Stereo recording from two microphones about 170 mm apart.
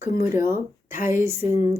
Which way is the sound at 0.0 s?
15° right (ahead or behind).